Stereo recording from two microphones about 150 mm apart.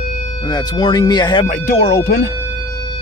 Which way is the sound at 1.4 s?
70° left (ahead or behind).